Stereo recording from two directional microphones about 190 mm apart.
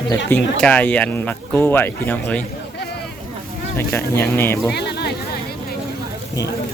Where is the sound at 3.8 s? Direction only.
15° left (ahead or behind).